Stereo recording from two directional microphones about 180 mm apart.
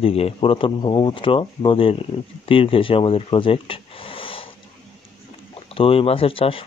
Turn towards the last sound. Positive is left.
turn(degrees=30)  # may be behind; listen again after turning